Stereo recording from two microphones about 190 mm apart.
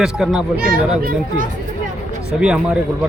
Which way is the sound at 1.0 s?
50° right (ahead or behind).